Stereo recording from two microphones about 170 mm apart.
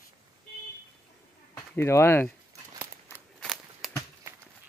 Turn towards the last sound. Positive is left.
turn(degrees=0)  # may be behind; listen again after turning